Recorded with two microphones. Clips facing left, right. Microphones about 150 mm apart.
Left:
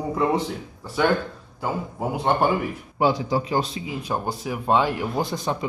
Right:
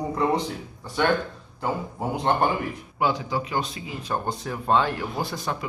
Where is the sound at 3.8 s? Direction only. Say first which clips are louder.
Left 2 dB; 10° left (ahead or behind).